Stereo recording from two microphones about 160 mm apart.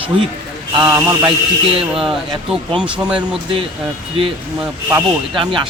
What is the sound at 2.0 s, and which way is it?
Speech, 5° right (ahead or behind).